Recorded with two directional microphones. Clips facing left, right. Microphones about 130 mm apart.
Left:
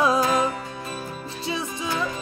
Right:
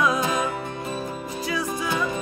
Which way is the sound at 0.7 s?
20° right (ahead or behind).